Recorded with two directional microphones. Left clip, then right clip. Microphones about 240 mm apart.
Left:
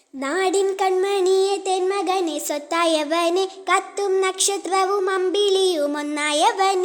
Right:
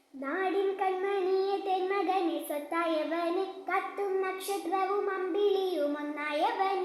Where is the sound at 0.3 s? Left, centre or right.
Left.